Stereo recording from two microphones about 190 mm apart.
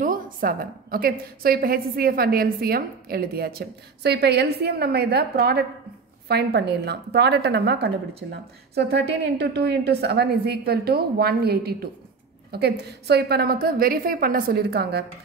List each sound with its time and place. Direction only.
0.0 s a woman's voice: 45° right (ahead or behind)
9.4 s a woman's voice: 60° right (ahead or behind)